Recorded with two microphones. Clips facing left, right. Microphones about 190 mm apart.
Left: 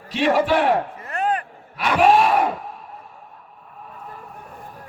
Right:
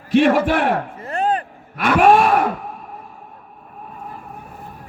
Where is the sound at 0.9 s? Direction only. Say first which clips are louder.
Right 3 dB; 30° right (ahead or behind).